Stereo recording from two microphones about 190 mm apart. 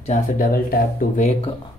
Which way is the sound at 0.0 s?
40° left (ahead or behind).